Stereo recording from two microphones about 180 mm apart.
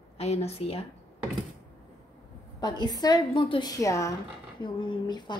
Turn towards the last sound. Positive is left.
turn(degrees=25)  # may be behind; listen again after turning